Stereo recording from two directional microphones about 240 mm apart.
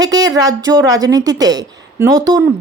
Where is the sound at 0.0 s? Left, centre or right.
Centre.